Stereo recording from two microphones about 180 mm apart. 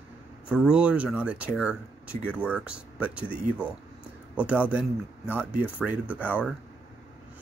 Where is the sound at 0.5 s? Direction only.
5° right (ahead or behind).